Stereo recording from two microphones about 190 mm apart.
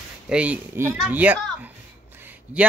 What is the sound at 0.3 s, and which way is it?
A child's voice, 5° right (ahead or behind).